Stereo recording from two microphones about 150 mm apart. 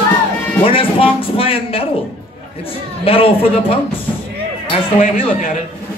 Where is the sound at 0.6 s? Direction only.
40° left (ahead or behind).